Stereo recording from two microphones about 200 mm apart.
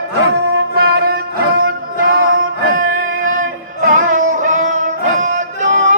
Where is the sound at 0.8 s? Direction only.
50° right (ahead or behind).